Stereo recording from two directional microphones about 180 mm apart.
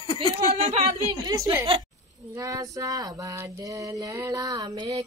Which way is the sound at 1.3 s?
20° right (ahead or behind).